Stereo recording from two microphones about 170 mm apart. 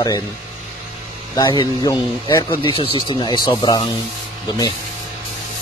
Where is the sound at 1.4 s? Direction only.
25° left (ahead or behind).